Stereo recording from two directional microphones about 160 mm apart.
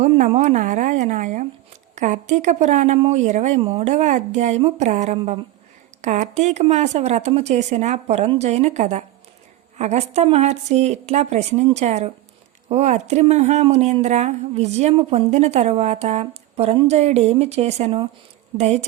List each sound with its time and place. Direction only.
0.0 s a woman's voice: 45° right (ahead or behind)